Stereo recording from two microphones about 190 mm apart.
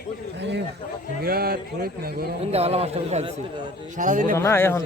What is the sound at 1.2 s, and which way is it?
Speech, 50° right (ahead or behind).